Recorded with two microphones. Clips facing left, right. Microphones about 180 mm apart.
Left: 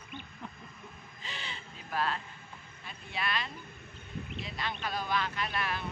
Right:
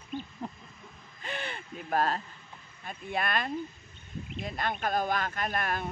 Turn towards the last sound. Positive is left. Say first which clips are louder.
# right 3 dB
turn(degrees=-50)  # may be behind; listen again after turning